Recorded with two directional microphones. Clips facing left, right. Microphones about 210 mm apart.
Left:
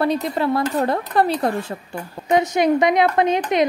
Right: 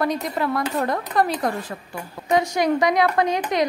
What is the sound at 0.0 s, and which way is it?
A woman's voice, 30° left (ahead or behind).